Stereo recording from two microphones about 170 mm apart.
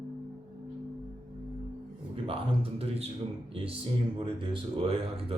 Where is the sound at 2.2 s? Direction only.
35° right (ahead or behind).